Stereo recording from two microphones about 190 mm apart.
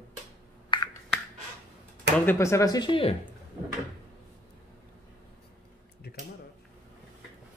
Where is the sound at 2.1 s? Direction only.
10° left (ahead or behind); by 3.1 s 25° left (ahead or behind).